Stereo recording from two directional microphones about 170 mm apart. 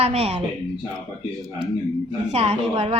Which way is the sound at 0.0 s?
35° right (ahead or behind).